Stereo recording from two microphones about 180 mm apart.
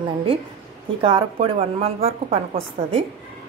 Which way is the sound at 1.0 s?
30° right (ahead or behind).